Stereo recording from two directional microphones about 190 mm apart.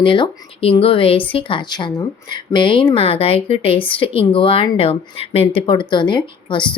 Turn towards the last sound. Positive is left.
turn(degrees=25)  # may be behind; listen again after turning